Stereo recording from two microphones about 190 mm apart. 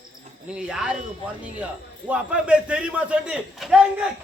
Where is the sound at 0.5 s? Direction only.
5° right (ahead or behind).